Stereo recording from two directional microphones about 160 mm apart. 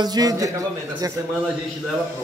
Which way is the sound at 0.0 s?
25° right (ahead or behind).